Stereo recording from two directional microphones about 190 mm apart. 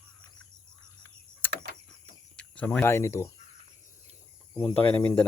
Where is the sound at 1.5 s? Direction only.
65° right (ahead or behind).